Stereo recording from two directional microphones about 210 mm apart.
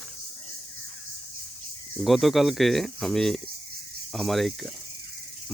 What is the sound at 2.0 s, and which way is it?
Speech, centre (ahead or behind).